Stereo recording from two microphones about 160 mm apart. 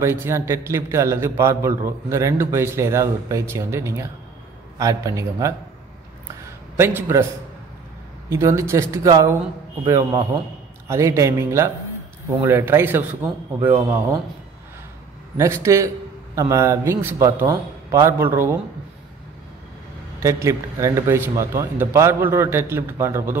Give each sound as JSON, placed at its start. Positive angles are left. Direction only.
{"t": 0.0, "sound": "a man's voice", "side_deg": -15}
{"t": 6.8, "sound": "a man's voice", "side_deg": -15}
{"t": 8.3, "sound": "a man's voice", "side_deg": -20}
{"t": 15.3, "sound": "a man's voice", "side_deg": -15}
{"t": 20.2, "sound": "a man's voice", "side_deg": -20}